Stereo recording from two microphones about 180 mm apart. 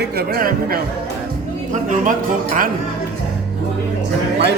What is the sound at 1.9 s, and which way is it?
Speech, 45° right (ahead or behind).